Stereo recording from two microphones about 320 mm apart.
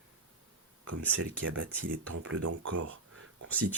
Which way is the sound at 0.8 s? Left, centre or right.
Right.